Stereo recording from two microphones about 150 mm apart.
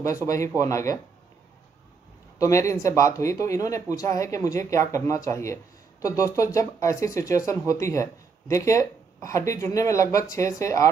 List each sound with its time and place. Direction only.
0.6 s speech: 20° left (ahead or behind)
2.3 s speech: 20° left (ahead or behind)